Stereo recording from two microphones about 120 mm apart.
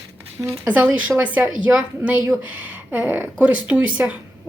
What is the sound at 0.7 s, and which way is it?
A woman's voice, 10° right (ahead or behind).